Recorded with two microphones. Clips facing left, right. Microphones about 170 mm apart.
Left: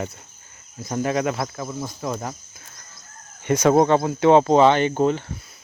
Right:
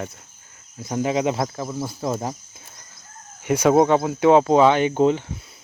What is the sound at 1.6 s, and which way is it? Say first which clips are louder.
Speech: right 2 dB; 10° right (ahead or behind).